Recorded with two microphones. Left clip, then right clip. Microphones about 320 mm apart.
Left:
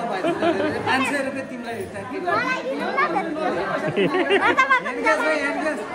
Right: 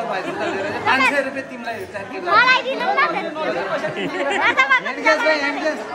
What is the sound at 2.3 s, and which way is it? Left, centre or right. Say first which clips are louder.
Speech: right 10 dB; centre.